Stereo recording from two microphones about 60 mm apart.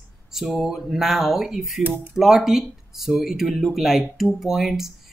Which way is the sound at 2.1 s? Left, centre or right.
Centre.